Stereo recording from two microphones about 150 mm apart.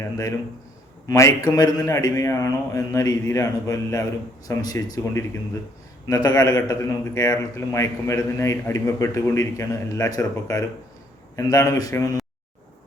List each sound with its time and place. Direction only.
0.0 s a man's voice: 20° left (ahead or behind)